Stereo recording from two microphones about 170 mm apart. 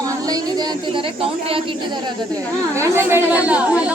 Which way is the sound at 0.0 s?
20° right (ahead or behind).